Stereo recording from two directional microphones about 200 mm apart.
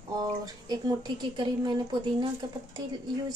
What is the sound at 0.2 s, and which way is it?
Speech, 20° right (ahead or behind).